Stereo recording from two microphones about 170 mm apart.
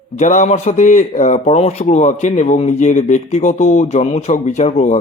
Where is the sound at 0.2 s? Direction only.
45° left (ahead or behind).